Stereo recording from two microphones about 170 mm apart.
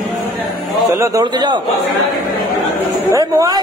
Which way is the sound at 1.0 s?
20° right (ahead or behind).